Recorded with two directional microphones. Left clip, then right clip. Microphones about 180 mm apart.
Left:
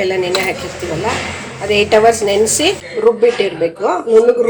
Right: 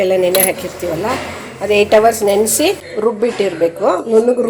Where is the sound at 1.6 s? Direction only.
30° right (ahead or behind).